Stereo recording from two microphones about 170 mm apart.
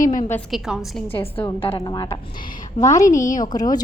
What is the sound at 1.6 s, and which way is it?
A woman's voice, 30° left (ahead or behind).